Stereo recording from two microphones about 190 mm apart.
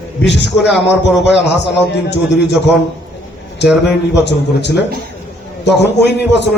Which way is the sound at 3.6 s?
65° left (ahead or behind).